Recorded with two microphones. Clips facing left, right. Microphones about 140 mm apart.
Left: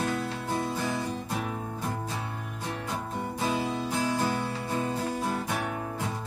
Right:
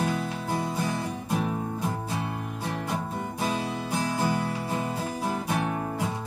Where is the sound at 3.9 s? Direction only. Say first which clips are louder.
Right 3 dB; 10° right (ahead or behind).